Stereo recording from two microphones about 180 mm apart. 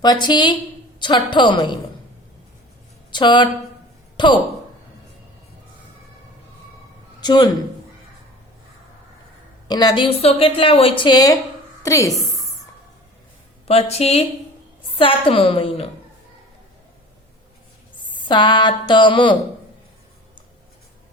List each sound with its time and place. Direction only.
0.0 s speech: 25° left (ahead or behind)
3.1 s speech: 25° left (ahead or behind)
7.2 s speech: 25° left (ahead or behind)
9.6 s a woman's voice: 25° left (ahead or behind)
13.7 s speech: 35° left (ahead or behind)
18.1 s speech: 25° left (ahead or behind)